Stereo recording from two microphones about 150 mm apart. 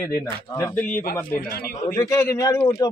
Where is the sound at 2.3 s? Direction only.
20° left (ahead or behind).